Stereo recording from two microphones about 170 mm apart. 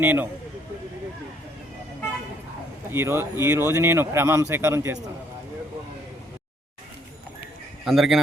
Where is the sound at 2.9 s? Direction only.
15° right (ahead or behind).